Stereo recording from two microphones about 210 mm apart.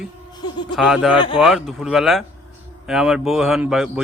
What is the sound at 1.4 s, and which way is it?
A man's voice, centre (ahead or behind).